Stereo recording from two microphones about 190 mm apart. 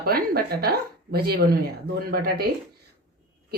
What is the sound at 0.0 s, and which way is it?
Speech, 50° right (ahead or behind).